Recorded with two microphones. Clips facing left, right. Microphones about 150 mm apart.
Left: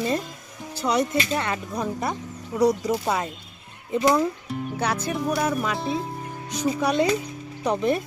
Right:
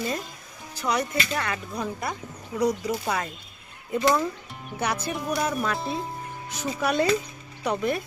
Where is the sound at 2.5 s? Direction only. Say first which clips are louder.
Left 4 dB; 30° left (ahead or behind).